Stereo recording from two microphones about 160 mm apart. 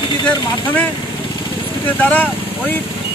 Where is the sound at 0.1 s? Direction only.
25° left (ahead or behind).